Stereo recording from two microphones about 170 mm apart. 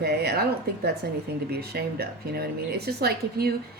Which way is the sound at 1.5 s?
70° right (ahead or behind).